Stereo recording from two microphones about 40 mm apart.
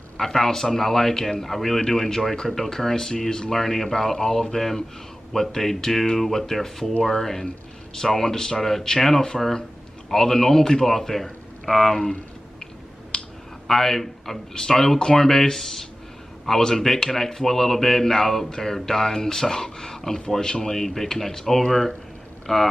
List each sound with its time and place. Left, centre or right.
0.2 s speech: centre
13.1 s a sound: centre
13.7 s speech: centre